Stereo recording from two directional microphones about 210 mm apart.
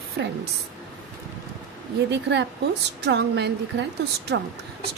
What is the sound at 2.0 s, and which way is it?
A woman's voice, 55° right (ahead or behind).